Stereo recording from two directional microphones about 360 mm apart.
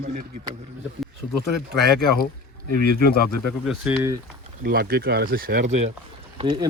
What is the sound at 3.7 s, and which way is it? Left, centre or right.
Speech, centre.